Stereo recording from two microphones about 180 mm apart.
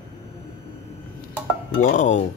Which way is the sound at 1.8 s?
45° left (ahead or behind).